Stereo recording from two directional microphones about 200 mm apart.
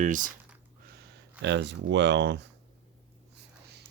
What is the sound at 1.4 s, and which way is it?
Speech, 60° right (ahead or behind).